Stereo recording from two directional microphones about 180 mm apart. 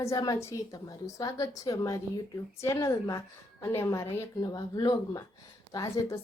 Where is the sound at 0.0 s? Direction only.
20° left (ahead or behind).